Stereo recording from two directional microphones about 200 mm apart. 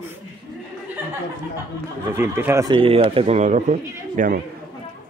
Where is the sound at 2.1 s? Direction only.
10° right (ahead or behind).